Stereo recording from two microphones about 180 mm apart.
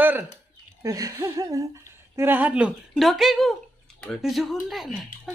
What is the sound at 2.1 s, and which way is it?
Speech, 10° right (ahead or behind).